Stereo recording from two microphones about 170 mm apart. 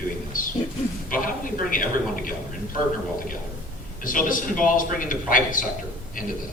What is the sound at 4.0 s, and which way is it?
A woman's voice, 55° left (ahead or behind).